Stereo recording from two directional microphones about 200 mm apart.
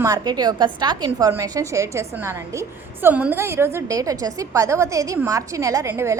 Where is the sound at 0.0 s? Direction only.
20° right (ahead or behind).